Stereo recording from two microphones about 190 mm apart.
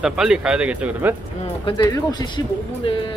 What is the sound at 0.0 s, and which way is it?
Speech, 5° right (ahead or behind).